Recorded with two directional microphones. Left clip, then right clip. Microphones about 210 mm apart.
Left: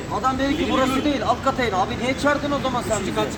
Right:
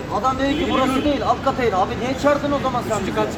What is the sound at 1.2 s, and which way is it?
Speech, 25° left (ahead or behind).